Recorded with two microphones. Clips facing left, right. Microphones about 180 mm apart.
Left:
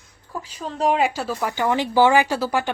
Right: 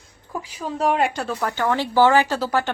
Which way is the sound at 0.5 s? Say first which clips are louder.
Even; 5° right (ahead or behind).